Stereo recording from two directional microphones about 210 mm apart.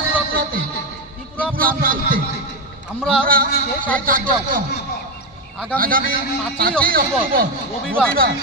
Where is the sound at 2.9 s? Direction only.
5° left (ahead or behind).